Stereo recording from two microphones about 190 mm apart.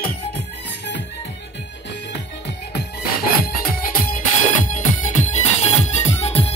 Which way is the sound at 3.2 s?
50° left (ahead or behind).